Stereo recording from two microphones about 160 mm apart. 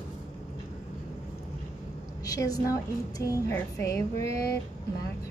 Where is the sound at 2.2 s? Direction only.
20° left (ahead or behind).